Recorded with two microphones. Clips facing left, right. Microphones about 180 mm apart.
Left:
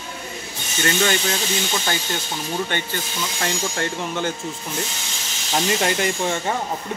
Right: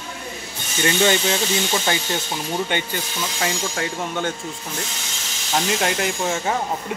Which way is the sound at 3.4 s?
5° right (ahead or behind).